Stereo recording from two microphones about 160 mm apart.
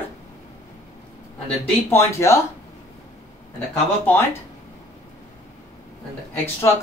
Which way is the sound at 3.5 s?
10° left (ahead or behind).